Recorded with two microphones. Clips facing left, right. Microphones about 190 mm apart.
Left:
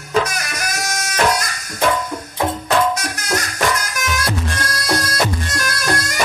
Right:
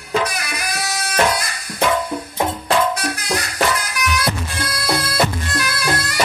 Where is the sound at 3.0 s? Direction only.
45° left (ahead or behind).